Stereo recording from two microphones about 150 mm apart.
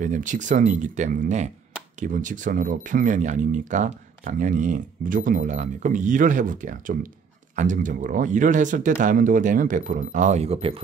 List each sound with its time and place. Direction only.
0.0 s speech: 60° right (ahead or behind); by 10.8 s 40° right (ahead or behind)